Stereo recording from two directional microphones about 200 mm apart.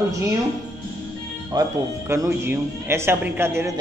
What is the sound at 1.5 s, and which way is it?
Speech, 15° right (ahead or behind).